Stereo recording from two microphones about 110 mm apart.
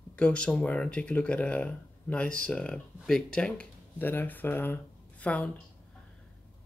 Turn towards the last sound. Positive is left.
turn(degrees=10)  # may be behind; listen again after turning